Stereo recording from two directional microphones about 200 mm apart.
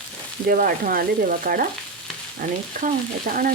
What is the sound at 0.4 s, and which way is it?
Frying, 45° right (ahead or behind).